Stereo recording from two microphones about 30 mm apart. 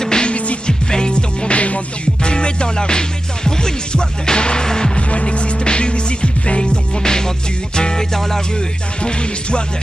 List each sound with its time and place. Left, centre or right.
0.0 s music: left
2.2 s music: left
4.9 s music: left